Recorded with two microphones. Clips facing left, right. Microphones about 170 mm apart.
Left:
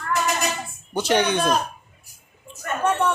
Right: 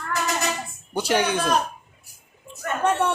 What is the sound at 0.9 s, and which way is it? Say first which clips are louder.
Speech: left 2 dB; 10° right (ahead or behind).